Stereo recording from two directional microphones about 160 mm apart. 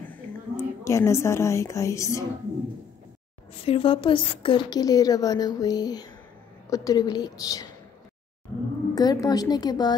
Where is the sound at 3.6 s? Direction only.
35° left (ahead or behind).